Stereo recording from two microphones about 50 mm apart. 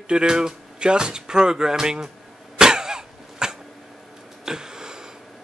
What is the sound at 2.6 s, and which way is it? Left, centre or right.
Cough, centre.